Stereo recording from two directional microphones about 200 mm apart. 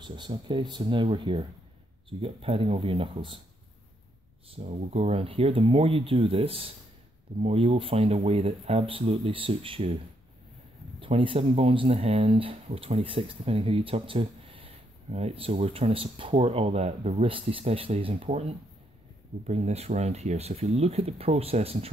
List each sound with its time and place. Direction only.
0.0 s speech: 25° right (ahead or behind)
4.6 s speech: 35° right (ahead or behind)
11.0 s speech: 25° right (ahead or behind)